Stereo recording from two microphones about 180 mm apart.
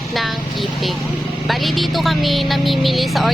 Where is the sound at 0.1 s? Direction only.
Centre (ahead or behind).